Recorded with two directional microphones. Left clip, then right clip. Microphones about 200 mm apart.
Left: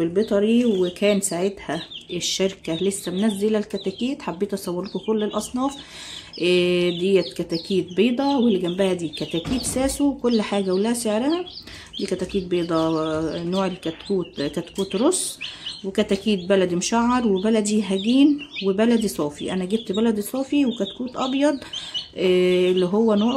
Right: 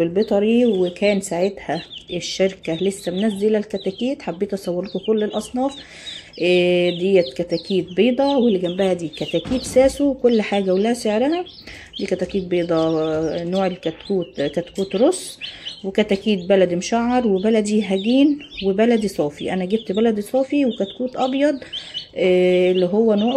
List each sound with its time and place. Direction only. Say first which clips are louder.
0.0 s speech: right 3 dB; 5° right (ahead or behind)
20.8 s speech: right 5 dB; 15° right (ahead or behind)
21.3 s speech: right 2 dB; centre (ahead or behind)